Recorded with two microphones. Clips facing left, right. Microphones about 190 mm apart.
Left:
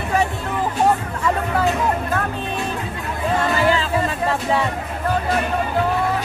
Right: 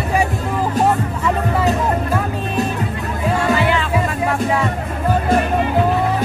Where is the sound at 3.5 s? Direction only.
40° left (ahead or behind).